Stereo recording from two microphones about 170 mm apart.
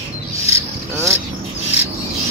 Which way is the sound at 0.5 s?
15° right (ahead or behind).